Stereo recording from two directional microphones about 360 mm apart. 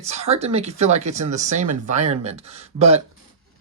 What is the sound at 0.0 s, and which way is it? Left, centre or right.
Speech, centre.